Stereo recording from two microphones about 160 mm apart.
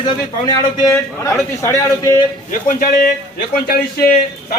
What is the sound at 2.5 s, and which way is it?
A man's voice, 60° left (ahead or behind).